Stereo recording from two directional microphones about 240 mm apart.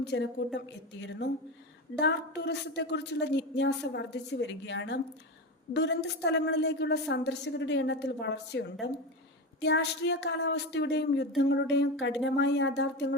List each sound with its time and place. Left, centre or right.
0.0 s a woman's voice: left
2.0 s a woman's voice: left